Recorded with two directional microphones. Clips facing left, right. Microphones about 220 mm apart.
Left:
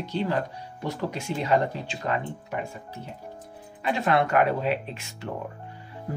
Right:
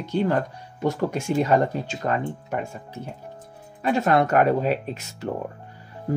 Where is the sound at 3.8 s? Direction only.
45° right (ahead or behind).